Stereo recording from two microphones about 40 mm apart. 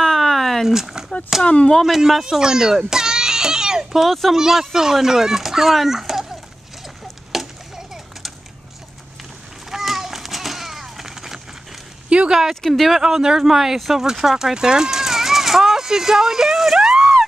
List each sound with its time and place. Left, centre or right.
0.0 s a sound: centre
0.7 s speech: centre
1.4 s speech: left
2.2 s speech: centre
2.9 s baby cry: centre
3.9 s speech: centre
4.3 s speech: centre
7.3 s a sound: centre
9.7 s a sound: centre
12.3 s speech: centre
13.0 s speech: centre
13.9 s a sound: centre